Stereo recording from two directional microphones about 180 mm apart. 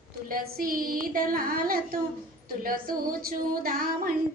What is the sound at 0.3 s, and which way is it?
A child's voice, 50° right (ahead or behind).